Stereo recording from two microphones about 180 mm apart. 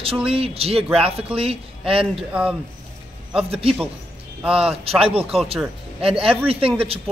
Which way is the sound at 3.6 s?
30° right (ahead or behind).